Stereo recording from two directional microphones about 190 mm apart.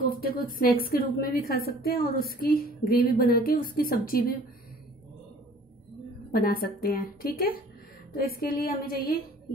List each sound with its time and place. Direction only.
0.2 s a woman's voice: 50° left (ahead or behind)
6.3 s a woman's voice: 50° left (ahead or behind)